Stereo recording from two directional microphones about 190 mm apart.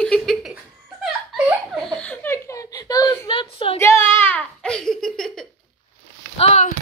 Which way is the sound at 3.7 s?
15° left (ahead or behind).